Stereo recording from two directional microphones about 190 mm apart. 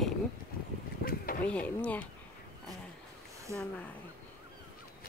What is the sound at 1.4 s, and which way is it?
Speech, 5° left (ahead or behind).